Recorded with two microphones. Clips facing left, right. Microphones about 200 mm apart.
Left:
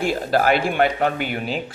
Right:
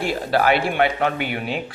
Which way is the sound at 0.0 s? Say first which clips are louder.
Left 1 dB; 45° left (ahead or behind).